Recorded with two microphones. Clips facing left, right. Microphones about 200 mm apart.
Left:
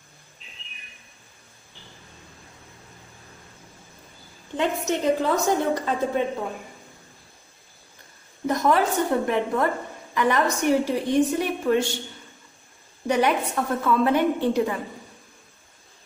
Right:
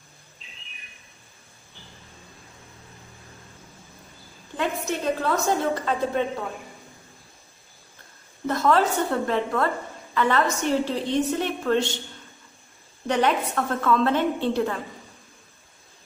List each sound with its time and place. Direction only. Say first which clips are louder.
4.6 s a woman's voice: left 3 dB; 20° left (ahead or behind)
8.5 s a woman's voice: even; 15° left (ahead or behind)
13.0 s a woman's voice: left 1 dB; 10° left (ahead or behind)